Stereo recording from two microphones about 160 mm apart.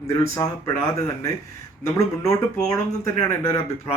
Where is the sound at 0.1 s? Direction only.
20° left (ahead or behind).